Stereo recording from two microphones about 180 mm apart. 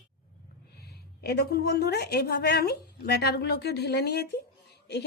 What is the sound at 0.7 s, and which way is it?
A woman's voice, 65° left (ahead or behind).